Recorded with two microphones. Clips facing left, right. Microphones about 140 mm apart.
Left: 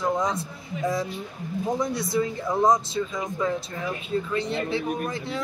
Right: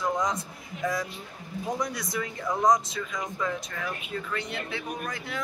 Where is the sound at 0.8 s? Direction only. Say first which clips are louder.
Left 3 dB; 25° left (ahead or behind).